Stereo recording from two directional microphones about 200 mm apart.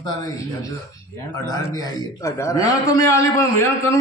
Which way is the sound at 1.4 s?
20° left (ahead or behind).